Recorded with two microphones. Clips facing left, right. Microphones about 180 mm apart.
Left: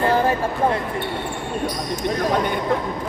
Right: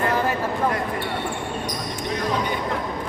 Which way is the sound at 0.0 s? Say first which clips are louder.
Left 4 dB; 30° left (ahead or behind).